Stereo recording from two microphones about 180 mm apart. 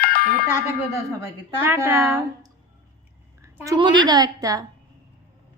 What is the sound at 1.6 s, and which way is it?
Speech, 15° right (ahead or behind).